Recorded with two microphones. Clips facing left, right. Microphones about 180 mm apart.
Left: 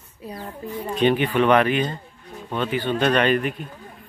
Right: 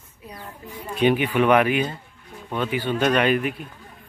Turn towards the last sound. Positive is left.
turn(degrees=-5)  # may be behind; listen again after turning